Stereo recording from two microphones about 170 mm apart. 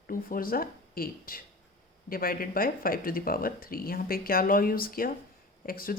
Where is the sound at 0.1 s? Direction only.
55° left (ahead or behind).